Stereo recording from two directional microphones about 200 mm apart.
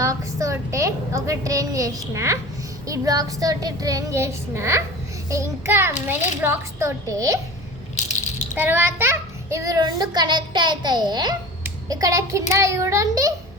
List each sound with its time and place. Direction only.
0.0 s a woman's voice: 15° right (ahead or behind)
2.8 s child singing: 15° right (ahead or behind)
8.5 s a child's voice: 10° right (ahead or behind)
11.6 s child singing: 15° right (ahead or behind)